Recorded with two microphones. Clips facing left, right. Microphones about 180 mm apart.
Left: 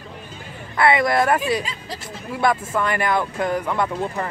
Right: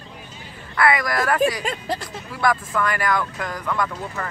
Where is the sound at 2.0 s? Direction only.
25° left (ahead or behind).